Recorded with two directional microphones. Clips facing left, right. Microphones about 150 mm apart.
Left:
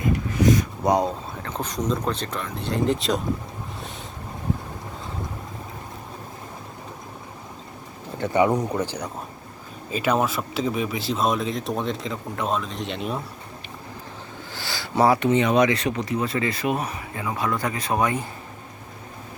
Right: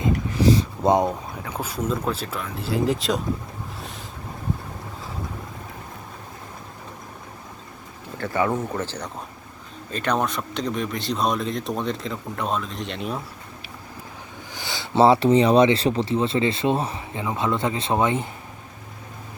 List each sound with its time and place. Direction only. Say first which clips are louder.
0.0 s a sound: even; 25° right (ahead or behind)
1.4 s speech: even; 10° right (ahead or behind)
8.2 s speech: left 3 dB; 20° left (ahead or behind); by 13.2 s centre (ahead or behind)
14.5 s speech: right 3 dB; 20° right (ahead or behind)